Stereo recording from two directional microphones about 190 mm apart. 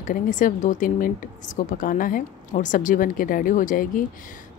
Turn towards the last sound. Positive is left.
turn(degrees=45)  # may be behind; listen again after turning